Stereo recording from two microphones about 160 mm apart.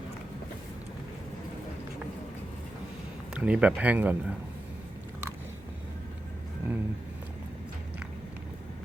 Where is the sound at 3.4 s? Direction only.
5° right (ahead or behind).